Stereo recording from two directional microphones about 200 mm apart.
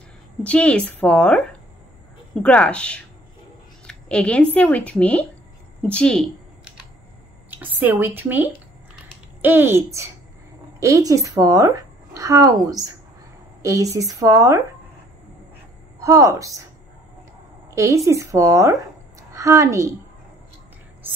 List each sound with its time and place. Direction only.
0.4 s a woman's voice: 5° left (ahead or behind)
3.8 s a sound: 5° left (ahead or behind)
4.6 s a woman's voice: 5° left (ahead or behind)
5.8 s a sound: 5° left (ahead or behind)
7.5 s a woman's voice: 10° right (ahead or behind)
16.0 s a woman's voice: 15° right (ahead or behind)
17.6 s a woman's voice: 15° right (ahead or behind)